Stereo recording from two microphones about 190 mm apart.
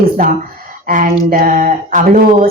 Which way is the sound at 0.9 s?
45° right (ahead or behind).